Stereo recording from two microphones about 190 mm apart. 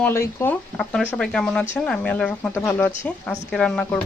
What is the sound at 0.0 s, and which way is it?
Speech, 15° left (ahead or behind).